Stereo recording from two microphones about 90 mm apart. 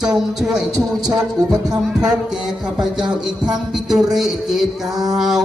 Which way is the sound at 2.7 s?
5° right (ahead or behind).